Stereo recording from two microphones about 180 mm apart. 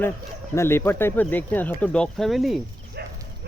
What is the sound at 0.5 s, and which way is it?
Speech, 15° left (ahead or behind).